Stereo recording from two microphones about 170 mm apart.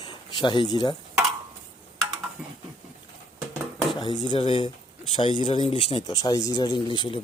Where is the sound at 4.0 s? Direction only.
25° left (ahead or behind).